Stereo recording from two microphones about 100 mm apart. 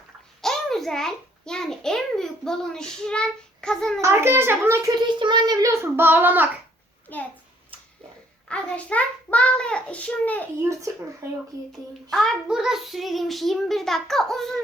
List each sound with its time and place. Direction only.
0.4 s a child's voice: 5° left (ahead or behind)
4.0 s a child's voice: 25° right (ahead or behind)
4.9 s a child's voice: 50° right (ahead or behind); by 6.5 s 20° right (ahead or behind)
8.4 s a child's voice: 15° left (ahead or behind)
10.6 s a child's voice: 30° right (ahead or behind)
12.1 s a child's voice: 5° left (ahead or behind)